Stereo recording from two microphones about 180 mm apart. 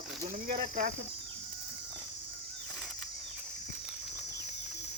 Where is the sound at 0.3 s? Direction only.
50° right (ahead or behind).